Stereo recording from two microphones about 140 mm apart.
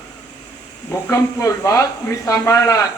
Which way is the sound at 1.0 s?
20° left (ahead or behind).